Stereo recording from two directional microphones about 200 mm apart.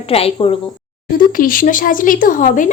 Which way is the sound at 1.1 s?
45° left (ahead or behind).